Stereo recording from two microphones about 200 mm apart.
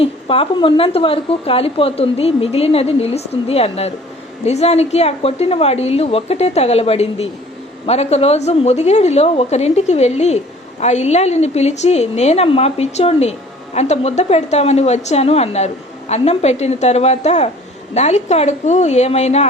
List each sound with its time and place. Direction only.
0.0 s a woman's voice: 25° left (ahead or behind)